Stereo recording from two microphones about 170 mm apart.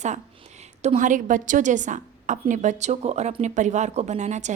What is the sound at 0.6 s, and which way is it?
A woman's voice, 45° right (ahead or behind).